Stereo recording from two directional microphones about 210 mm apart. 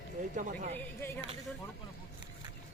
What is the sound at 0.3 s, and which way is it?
Speech, 40° right (ahead or behind).